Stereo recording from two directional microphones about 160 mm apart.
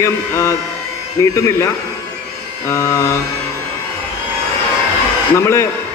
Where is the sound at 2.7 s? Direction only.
15° left (ahead or behind).